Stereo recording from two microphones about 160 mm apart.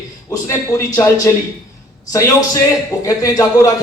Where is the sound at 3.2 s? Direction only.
25° left (ahead or behind).